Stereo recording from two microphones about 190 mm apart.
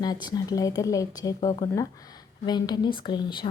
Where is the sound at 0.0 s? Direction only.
20° left (ahead or behind).